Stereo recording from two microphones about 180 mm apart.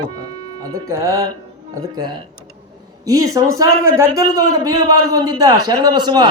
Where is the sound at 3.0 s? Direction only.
20° right (ahead or behind).